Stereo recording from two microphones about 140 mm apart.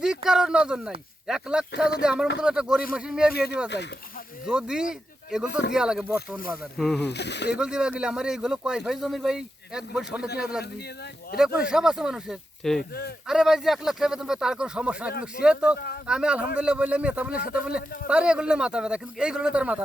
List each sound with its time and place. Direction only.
0.3 s speech: 5° right (ahead or behind)
4.4 s speech: 5° right (ahead or behind)